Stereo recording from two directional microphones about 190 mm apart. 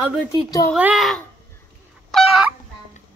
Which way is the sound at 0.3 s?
20° left (ahead or behind).